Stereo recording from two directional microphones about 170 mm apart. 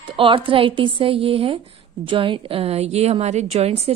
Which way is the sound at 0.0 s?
30° right (ahead or behind).